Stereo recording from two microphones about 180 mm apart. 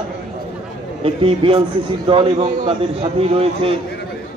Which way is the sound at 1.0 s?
30° right (ahead or behind).